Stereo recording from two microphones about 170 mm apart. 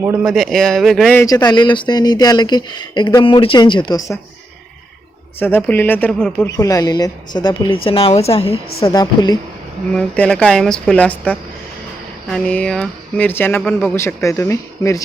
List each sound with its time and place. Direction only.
0.0 s speech: 15° right (ahead or behind)
0.3 s speech: centre (ahead or behind)
1.1 s speech: 20° left (ahead or behind)
5.4 s speech: 10° left (ahead or behind)
6.6 s speech: 20° left (ahead or behind)
8.8 s speech: 20° left (ahead or behind)
9.9 s speech: 5° left (ahead or behind)